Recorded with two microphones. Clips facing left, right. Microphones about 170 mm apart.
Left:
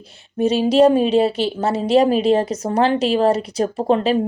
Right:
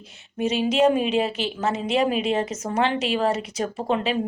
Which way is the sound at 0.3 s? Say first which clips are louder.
Left 7 dB; 35° left (ahead or behind).